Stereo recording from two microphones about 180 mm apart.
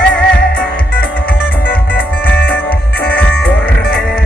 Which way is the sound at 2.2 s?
10° left (ahead or behind).